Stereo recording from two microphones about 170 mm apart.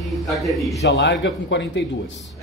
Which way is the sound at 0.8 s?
85° left.